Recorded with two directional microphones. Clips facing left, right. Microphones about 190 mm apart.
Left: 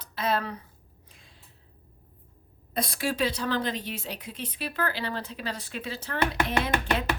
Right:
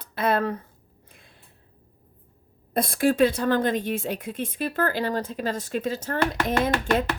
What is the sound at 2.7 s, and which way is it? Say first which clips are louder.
A woman's voice: right 8 dB; 50° right (ahead or behind).